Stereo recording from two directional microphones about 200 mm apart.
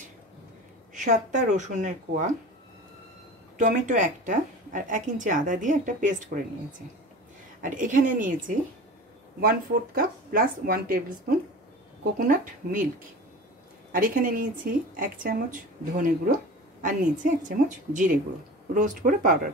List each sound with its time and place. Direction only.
0.9 s a woman's voice: 35° right (ahead or behind)
3.5 s a woman's voice: 40° right (ahead or behind)
7.6 s a woman's voice: 40° right (ahead or behind)
13.9 s a woman's voice: 45° right (ahead or behind)
17.5 s a woman's voice: 40° right (ahead or behind)